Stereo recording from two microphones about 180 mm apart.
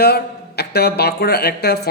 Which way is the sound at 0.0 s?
60° left (ahead or behind).